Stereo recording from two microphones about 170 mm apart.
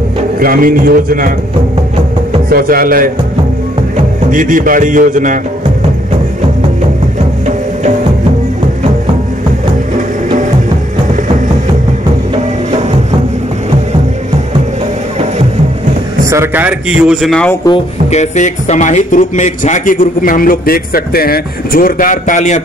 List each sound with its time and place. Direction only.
0.4 s a man's voice: 60° right (ahead or behind)
2.5 s a man's voice: 60° right (ahead or behind)
16.3 s a man's voice: 15° right (ahead or behind); by 17.6 s 5° left (ahead or behind)
18.1 s speech: 45° left (ahead or behind)